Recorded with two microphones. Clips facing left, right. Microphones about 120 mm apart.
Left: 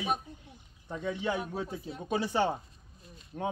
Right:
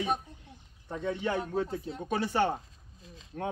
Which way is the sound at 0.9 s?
50° right (ahead or behind).